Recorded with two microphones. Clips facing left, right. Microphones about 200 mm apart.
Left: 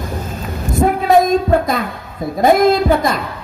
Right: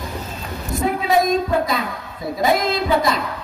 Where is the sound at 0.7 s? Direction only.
50° left (ahead or behind).